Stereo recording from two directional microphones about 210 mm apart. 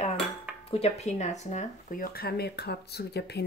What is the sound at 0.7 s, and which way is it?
Speech, 30° left (ahead or behind).